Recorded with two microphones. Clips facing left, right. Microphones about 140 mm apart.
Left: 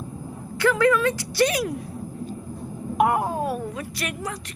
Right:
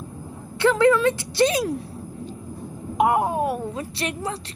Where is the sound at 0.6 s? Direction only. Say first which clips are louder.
Right 2 dB; 25° right (ahead or behind).